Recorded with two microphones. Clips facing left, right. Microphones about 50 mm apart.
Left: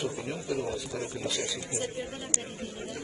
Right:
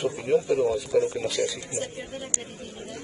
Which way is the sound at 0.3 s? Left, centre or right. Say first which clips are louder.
Right 15 dB; right.